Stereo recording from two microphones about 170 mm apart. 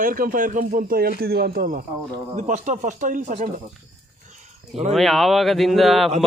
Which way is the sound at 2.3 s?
45° right (ahead or behind).